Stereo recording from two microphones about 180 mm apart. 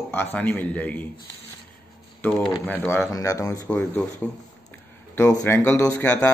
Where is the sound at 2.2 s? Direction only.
10° left (ahead or behind).